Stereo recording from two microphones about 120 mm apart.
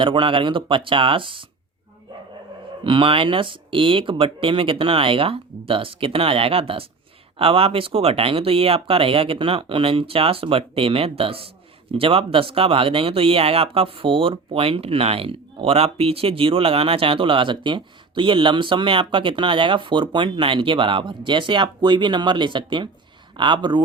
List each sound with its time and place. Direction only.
0.0 s speech: 45° right (ahead or behind)
2.8 s speech: 45° right (ahead or behind)